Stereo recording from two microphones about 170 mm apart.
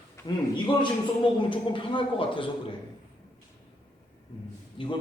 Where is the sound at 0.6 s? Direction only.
25° left (ahead or behind).